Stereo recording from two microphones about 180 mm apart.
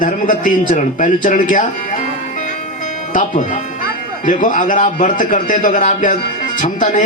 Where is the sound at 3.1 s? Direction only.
45° left (ahead or behind).